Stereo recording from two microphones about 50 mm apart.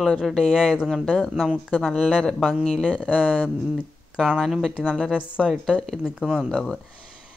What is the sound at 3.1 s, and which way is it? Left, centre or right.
Speech, centre.